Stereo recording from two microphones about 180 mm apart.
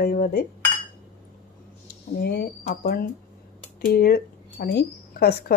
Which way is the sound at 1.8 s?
60° left (ahead or behind).